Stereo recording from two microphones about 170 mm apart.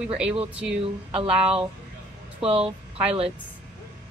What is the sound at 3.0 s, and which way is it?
Speech, 35° right (ahead or behind).